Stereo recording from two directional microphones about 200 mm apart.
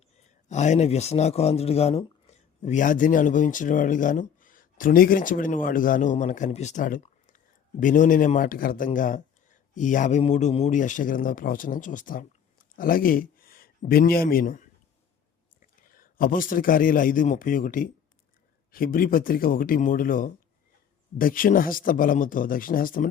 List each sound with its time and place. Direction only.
0.4 s a man's voice: 35° left (ahead or behind)